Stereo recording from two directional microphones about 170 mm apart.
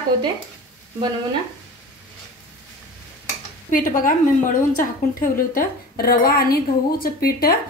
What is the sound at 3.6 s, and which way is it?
A woman's voice, 55° left (ahead or behind).